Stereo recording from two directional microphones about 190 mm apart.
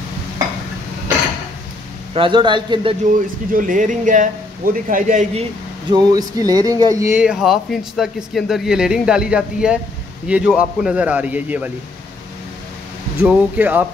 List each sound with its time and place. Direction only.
2.1 s a man's voice: 25° right (ahead or behind)
3.1 s speech: 45° right (ahead or behind)
5.9 s a man's voice: 20° right (ahead or behind)
13.2 s a man's voice: 10° right (ahead or behind)